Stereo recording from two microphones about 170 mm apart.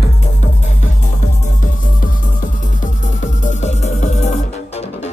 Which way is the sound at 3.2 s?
45° left (ahead or behind).